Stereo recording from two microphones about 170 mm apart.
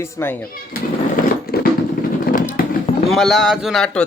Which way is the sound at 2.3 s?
50° left (ahead or behind).